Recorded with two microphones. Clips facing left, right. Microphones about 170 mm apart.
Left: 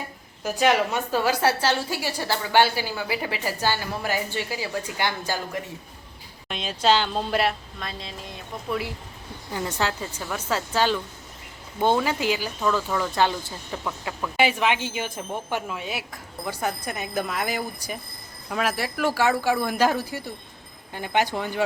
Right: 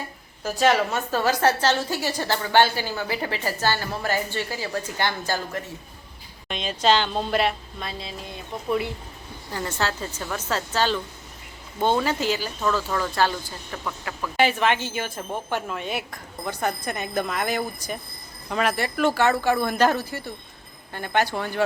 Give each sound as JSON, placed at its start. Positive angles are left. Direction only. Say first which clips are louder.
{"t": 0.4, "sound": "a woman's voice", "louder": "right 1 dB", "side_deg": 15}
{"t": 9.5, "sound": "a woman's voice", "louder": "even", "side_deg": 15}